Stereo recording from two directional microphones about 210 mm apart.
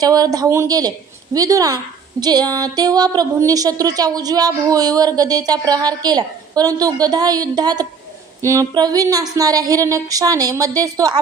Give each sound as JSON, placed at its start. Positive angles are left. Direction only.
{"t": 0.0, "sound": "a woman's voice", "side_deg": -15}